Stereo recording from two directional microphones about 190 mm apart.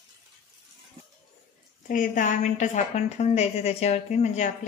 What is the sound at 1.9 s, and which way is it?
A woman's voice, 40° left (ahead or behind).